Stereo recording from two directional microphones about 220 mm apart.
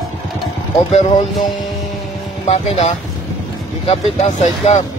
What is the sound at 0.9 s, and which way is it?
Speech, 30° left (ahead or behind).